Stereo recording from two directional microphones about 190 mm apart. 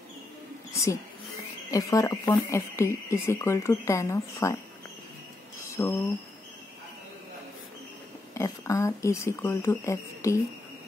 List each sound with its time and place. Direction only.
1.7 s speech: 15° left (ahead or behind)
5.6 s a sound: 15° left (ahead or behind)
8.4 s speech: 15° left (ahead or behind)